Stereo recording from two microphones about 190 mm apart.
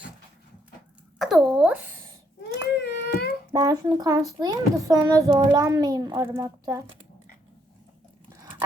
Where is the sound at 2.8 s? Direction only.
55° left (ahead or behind).